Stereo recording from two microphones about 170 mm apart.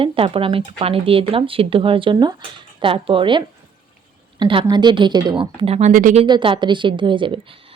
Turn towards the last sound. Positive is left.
turn(degrees=-30)  # may be behind; listen again after turning